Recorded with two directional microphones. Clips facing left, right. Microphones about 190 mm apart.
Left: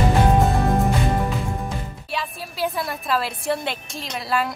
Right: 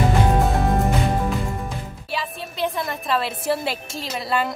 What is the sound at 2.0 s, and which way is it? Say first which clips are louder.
A woman's voice: right 2 dB; centre (ahead or behind).